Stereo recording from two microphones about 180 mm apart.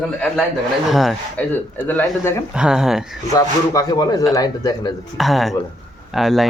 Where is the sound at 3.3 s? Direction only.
20° left (ahead or behind).